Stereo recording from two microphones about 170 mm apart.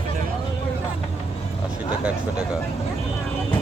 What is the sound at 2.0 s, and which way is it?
Speech, 10° right (ahead or behind).